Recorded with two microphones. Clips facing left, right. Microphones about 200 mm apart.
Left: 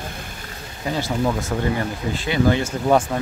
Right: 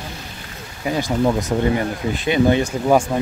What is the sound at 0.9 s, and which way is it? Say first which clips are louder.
Speech: right 4 dB; 15° right (ahead or behind).